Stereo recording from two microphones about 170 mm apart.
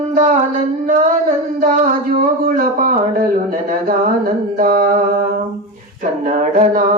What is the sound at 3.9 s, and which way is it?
Mantra, 55° right (ahead or behind).